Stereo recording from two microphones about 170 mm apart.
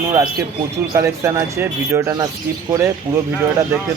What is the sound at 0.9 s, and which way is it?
Speech, 15° right (ahead or behind).